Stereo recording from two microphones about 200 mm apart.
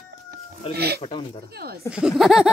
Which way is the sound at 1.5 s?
50° right (ahead or behind).